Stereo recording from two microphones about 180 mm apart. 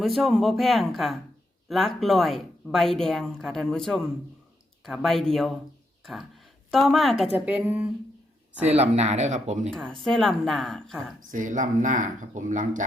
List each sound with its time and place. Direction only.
0.0 s speech: centre (ahead or behind)
6.7 s speech: centre (ahead or behind)
7.3 s a woman's voice: 10° right (ahead or behind)
8.8 s speech: 40° right (ahead or behind)
9.7 s speech: 5° left (ahead or behind)
11.3 s speech: 45° right (ahead or behind)